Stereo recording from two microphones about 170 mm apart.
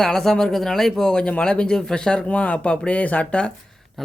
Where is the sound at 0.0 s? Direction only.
Centre (ahead or behind).